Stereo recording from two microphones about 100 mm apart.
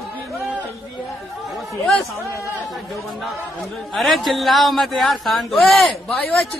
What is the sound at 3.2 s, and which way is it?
A man's voice, centre (ahead or behind).